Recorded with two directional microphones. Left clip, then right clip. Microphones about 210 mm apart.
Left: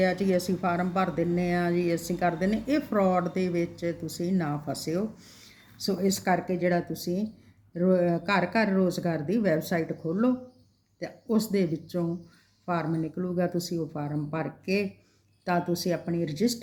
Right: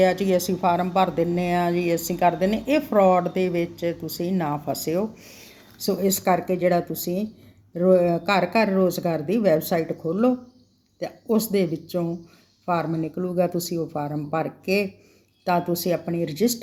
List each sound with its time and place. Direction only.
0.2 s a woman's voice: 10° left (ahead or behind)